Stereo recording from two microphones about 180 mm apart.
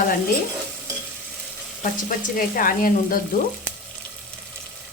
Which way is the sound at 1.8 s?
50° left (ahead or behind).